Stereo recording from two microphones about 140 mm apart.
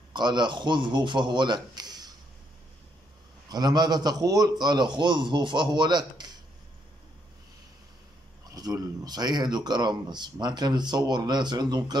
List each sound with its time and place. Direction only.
0.1 s a man's voice: 30° right (ahead or behind)
3.4 s a man's voice: 30° right (ahead or behind)
8.5 s speech: 25° right (ahead or behind)